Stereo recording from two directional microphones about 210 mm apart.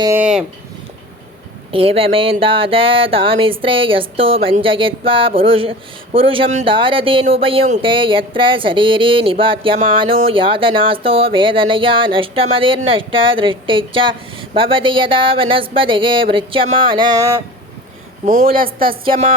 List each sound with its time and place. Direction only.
0.0 s speech: 10° right (ahead or behind)
1.7 s speech: 25° right (ahead or behind)
18.3 s a woman's voice: 35° right (ahead or behind)